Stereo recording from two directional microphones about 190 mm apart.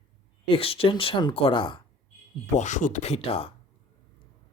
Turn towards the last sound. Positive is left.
turn(degrees=30)  # may be behind; listen again after turning